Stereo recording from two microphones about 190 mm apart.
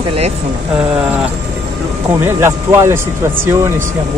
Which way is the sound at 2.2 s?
15° right (ahead or behind).